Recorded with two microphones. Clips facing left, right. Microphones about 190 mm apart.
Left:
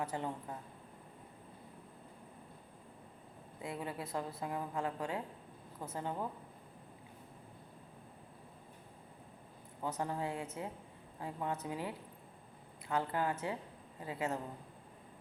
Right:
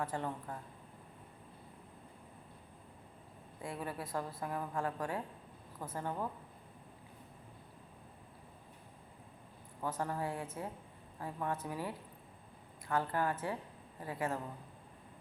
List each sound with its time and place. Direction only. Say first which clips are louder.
0.0 s a woman's voice: even; 20° left (ahead or behind)
3.6 s a woman's voice: even; 20° left (ahead or behind)
9.8 s a woman's voice: even; 20° left (ahead or behind)